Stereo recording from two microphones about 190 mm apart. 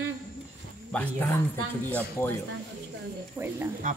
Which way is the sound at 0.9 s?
10° left (ahead or behind).